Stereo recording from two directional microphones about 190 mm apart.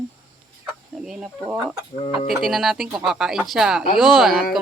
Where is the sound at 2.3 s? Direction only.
Centre (ahead or behind).